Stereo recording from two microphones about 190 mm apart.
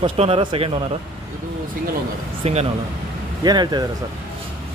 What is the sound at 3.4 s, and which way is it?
Speech, 20° right (ahead or behind).